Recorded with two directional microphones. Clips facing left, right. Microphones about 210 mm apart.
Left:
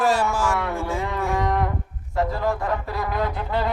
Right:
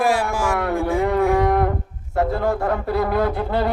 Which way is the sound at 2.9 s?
60° right (ahead or behind).